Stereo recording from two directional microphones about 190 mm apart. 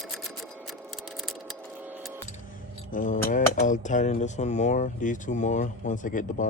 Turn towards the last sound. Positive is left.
turn(degrees=45)  # may be behind; listen again after turning